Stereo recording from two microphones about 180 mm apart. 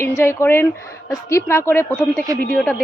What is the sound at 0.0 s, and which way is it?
A woman's voice, 15° left (ahead or behind).